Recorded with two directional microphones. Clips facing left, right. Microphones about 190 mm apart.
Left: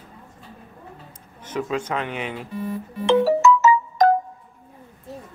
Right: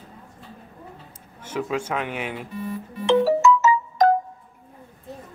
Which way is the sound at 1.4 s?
10° right (ahead or behind).